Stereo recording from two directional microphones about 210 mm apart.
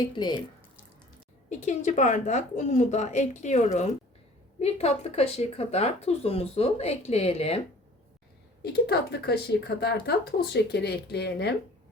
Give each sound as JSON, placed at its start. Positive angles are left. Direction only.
{"t": 1.5, "sound": "a woman's voice", "side_deg": 35}
{"t": 8.6, "sound": "speech", "side_deg": 50}